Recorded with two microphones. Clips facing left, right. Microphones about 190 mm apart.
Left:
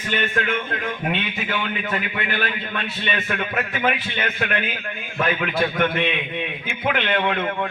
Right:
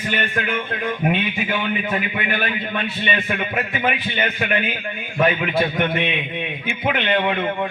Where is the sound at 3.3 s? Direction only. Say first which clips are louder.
Right 1 dB; 10° right (ahead or behind).